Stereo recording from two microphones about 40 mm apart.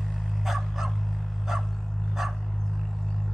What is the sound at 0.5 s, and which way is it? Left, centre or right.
Dog, centre.